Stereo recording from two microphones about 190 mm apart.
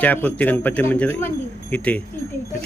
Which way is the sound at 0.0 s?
10° left (ahead or behind).